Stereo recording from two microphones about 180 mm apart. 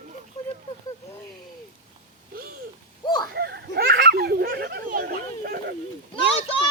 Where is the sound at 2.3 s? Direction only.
55° right (ahead or behind).